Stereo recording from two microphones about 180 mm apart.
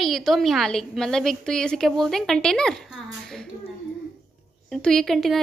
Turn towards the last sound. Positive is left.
turn(degrees=0)  # may be behind; listen again after turning